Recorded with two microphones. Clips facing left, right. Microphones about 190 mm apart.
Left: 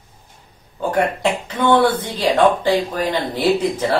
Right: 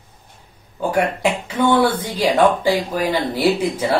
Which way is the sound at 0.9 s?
10° right (ahead or behind).